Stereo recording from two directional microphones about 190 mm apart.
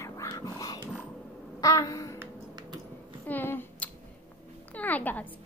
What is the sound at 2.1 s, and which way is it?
Music, 20° right (ahead or behind).